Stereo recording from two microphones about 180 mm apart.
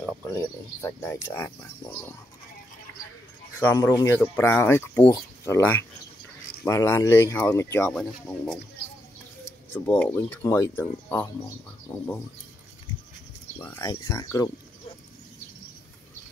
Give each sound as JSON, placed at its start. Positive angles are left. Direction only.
{"t": 0.7, "sound": "speech", "side_deg": 15}
{"t": 3.5, "sound": "speech", "side_deg": 15}
{"t": 9.9, "sound": "speech", "side_deg": 10}
{"t": 13.6, "sound": "speech", "side_deg": 15}